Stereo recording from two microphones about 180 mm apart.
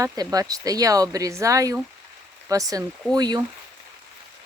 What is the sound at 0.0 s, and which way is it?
Speech, 20° right (ahead or behind).